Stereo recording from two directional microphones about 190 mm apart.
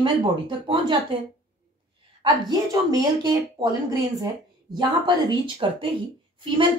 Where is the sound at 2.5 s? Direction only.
20° right (ahead or behind).